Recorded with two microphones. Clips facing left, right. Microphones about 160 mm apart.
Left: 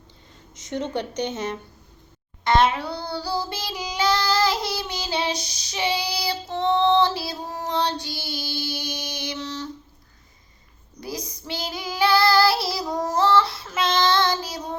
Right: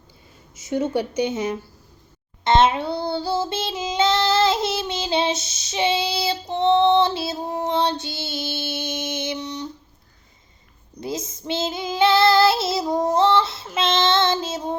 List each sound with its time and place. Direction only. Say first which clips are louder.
0.5 s speech: right 5 dB; 10° right (ahead or behind)
2.4 s child singing: right 2 dB; 25° right (ahead or behind)
11.0 s female singing: right 4 dB; 25° right (ahead or behind)